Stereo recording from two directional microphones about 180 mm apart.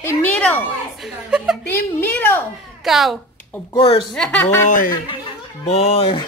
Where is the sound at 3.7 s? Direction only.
30° left (ahead or behind).